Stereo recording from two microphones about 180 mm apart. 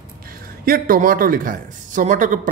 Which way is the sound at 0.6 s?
55° right (ahead or behind).